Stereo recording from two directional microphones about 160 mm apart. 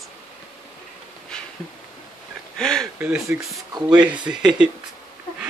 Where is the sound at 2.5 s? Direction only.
5° left (ahead or behind).